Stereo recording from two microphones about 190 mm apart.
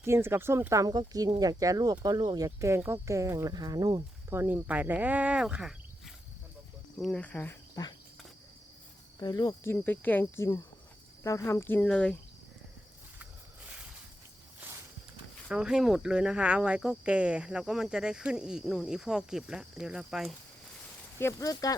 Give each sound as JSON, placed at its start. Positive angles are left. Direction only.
{"t": 0.0, "sound": "speech", "side_deg": -15}
{"t": 7.0, "sound": "speech", "side_deg": 5}
{"t": 7.8, "sound": "speech", "side_deg": 20}
{"t": 9.1, "sound": "speech", "side_deg": 20}
{"t": 15.4, "sound": "speech", "side_deg": -5}
{"t": 21.2, "sound": "speech", "side_deg": 15}